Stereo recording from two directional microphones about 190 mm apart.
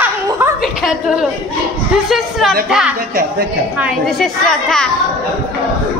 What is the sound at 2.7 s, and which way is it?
A woman's voice, 5° right (ahead or behind).